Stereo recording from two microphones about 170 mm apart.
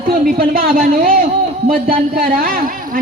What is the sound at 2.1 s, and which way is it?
Speech, 60° right (ahead or behind).